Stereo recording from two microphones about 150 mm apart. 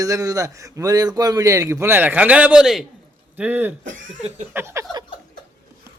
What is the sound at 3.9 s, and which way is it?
Speech, 55° right (ahead or behind).